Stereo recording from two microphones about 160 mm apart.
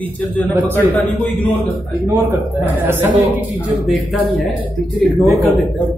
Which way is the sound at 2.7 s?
15° right (ahead or behind).